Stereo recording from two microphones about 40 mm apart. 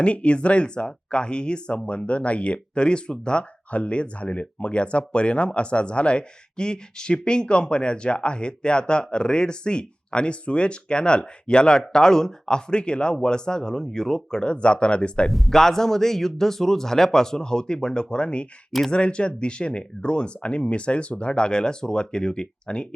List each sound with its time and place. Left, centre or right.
0.0 s a man's voice: left; by 14.4 s centre
14.4 s speech: left
15.3 s a man's voice: centre
15.5 s a man's voice: centre